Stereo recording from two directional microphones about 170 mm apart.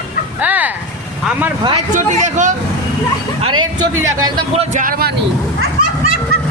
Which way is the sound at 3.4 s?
25° right (ahead or behind).